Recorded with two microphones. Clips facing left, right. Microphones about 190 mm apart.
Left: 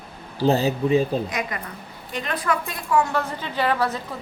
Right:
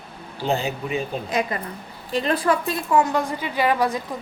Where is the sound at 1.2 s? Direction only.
30° right (ahead or behind).